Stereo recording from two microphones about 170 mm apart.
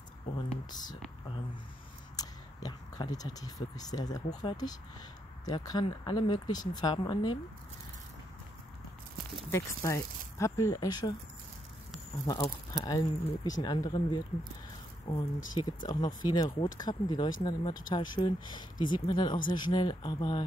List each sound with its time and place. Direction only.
0.7 s speech: 25° left (ahead or behind)
2.1 s speech: 25° left (ahead or behind)
9.5 s speech: 20° left (ahead or behind)
12.3 s speech: 25° left (ahead or behind)